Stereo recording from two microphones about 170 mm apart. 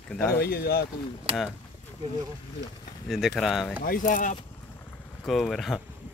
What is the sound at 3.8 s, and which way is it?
Speech, 55° left (ahead or behind).